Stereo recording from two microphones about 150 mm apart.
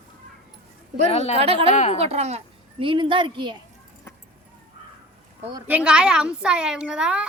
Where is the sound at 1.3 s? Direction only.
40° right (ahead or behind).